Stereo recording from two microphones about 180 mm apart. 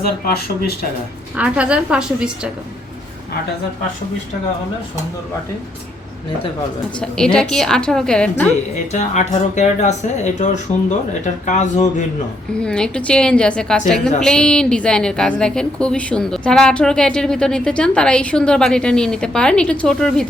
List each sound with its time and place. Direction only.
1.4 s a woman's voice: 5° right (ahead or behind)
7.0 s a woman's voice: 5° left (ahead or behind)
8.9 s speech: 40° left (ahead or behind)
12.5 s a woman's voice: 5° left (ahead or behind)